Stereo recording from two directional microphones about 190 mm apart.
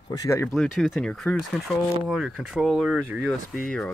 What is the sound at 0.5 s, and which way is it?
Speech, centre (ahead or behind).